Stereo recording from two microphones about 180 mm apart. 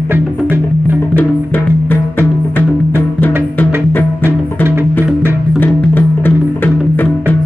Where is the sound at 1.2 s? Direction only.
10° left (ahead or behind).